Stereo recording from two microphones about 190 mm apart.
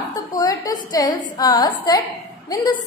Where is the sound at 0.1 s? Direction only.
20° left (ahead or behind).